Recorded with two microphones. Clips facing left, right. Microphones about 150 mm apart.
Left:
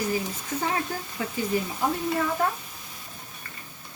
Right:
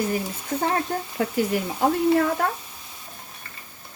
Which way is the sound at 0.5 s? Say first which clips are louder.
Right 4 dB; 60° right (ahead or behind).